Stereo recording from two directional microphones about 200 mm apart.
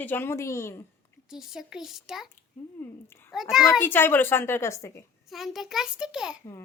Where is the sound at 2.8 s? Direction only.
10° left (ahead or behind).